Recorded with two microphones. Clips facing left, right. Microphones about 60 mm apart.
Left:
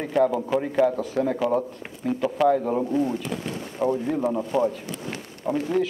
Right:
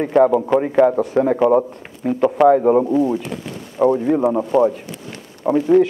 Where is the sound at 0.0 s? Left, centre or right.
Right.